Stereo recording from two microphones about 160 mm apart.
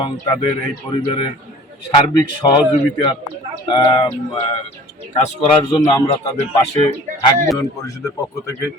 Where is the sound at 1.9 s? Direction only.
25° left (ahead or behind).